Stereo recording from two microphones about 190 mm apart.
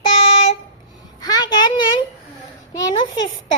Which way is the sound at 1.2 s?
20° left (ahead or behind).